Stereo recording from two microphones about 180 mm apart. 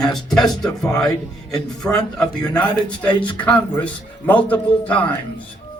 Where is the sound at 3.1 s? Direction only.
25° left (ahead or behind).